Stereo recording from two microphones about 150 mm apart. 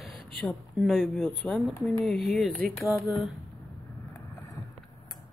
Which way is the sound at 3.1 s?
Centre (ahead or behind).